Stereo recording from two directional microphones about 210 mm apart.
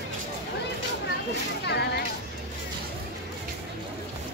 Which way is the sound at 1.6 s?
50° left (ahead or behind).